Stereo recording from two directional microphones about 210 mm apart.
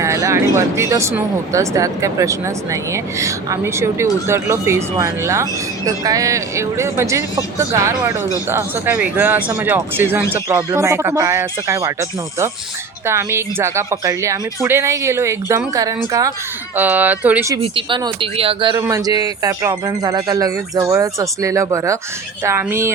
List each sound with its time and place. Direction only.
0.0 s a woman's voice: 15° right (ahead or behind)
17.6 s a woman's voice: 25° right (ahead or behind)